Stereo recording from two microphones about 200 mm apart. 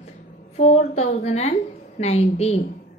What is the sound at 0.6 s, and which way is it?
A woman's voice, 35° left (ahead or behind).